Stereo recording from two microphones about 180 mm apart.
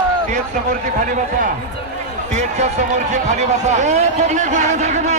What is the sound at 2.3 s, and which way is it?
A man's voice, 40° right (ahead or behind).